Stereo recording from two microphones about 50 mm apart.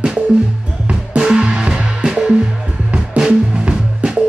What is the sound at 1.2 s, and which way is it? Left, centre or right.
Music, centre.